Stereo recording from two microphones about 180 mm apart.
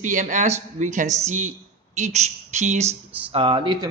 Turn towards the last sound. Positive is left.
turn(degrees=-25)  # may be behind; listen again after turning